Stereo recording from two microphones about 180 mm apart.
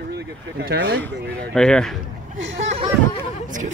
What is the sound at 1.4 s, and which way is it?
Speech, 5° left (ahead or behind).